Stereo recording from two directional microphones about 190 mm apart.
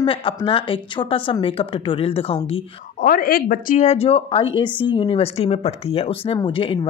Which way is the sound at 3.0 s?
50° left (ahead or behind).